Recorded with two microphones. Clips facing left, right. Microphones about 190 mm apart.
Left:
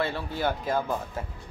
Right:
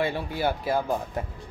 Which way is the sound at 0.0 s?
15° right (ahead or behind).